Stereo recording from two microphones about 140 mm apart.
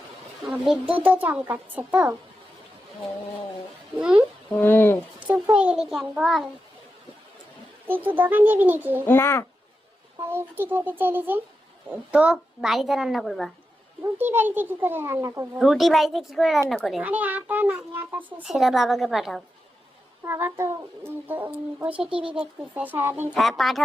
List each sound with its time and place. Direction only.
0.5 s a child's voice: 5° right (ahead or behind)
3.9 s a child's voice: 5° right (ahead or behind)
4.5 s speech: 15° left (ahead or behind)
5.2 s a woman's voice: 10° right (ahead or behind)
7.9 s a child's voice: 10° right (ahead or behind)
9.0 s speech: 15° left (ahead or behind)
10.2 s a child's voice: 15° right (ahead or behind); by 13.5 s centre (ahead or behind)
14.0 s a child's voice: 15° right (ahead or behind)
15.5 s a woman's voice: centre (ahead or behind)
17.0 s a child's voice: 10° right (ahead or behind)
20.2 s a child's voice: 20° right (ahead or behind)
22.1 s speech: 40° right (ahead or behind)
22.4 s a child's voice: 10° right (ahead or behind)
23.3 s a woman's voice: centre (ahead or behind)